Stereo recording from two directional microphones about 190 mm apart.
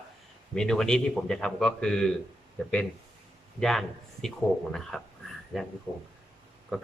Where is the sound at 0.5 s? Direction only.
5° left (ahead or behind).